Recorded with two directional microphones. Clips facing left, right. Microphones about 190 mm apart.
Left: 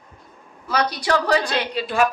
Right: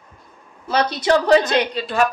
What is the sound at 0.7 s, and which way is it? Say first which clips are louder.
A woman's voice: right 4 dB; 25° right (ahead or behind).